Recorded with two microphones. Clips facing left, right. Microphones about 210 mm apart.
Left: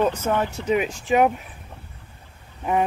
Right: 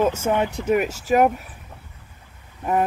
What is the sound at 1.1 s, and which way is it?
Speech, 5° right (ahead or behind).